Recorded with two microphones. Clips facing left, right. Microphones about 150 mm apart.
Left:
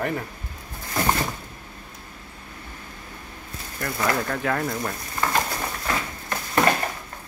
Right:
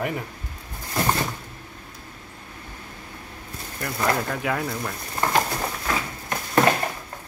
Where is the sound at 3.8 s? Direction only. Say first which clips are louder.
Even; 10° right (ahead or behind).